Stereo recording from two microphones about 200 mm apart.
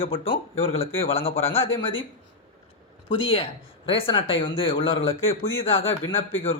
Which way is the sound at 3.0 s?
30° left (ahead or behind).